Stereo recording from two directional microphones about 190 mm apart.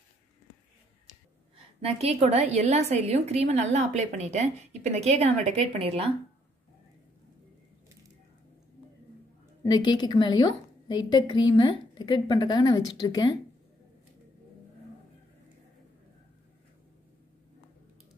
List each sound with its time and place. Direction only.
1.8 s a woman's voice: 30° right (ahead or behind)
9.6 s a woman's voice: 25° left (ahead or behind)